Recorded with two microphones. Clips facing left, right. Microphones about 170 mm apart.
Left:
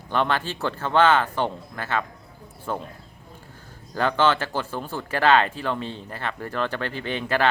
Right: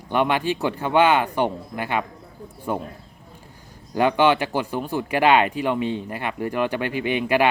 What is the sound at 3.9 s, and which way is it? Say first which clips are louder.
Speech: right 3 dB; 15° right (ahead or behind).